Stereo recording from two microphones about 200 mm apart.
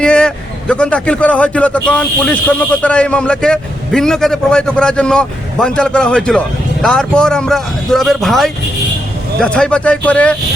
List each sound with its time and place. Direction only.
0.0 s a man's voice: 5° left (ahead or behind)